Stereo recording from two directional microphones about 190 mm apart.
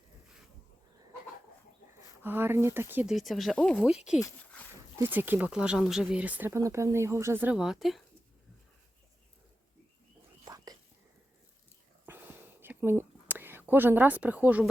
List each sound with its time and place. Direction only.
2.2 s speech: 10° right (ahead or behind); by 3.8 s 5° left (ahead or behind)
4.9 s speech: 10° right (ahead or behind)
10.4 s whispering: 20° right (ahead or behind)
12.1 s whispering: 10° right (ahead or behind)
12.6 s a sound: 10° right (ahead or behind)